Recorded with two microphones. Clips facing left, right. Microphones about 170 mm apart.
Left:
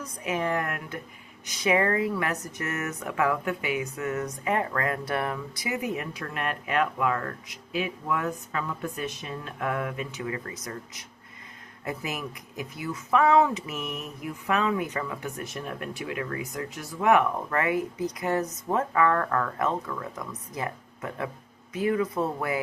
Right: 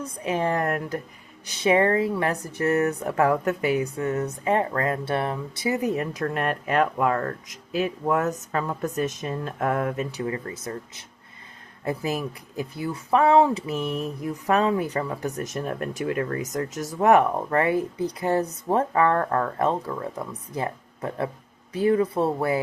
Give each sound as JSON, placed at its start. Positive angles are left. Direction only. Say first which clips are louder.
{"t": 0.0, "sound": "speech", "louder": "right 4 dB", "side_deg": -30}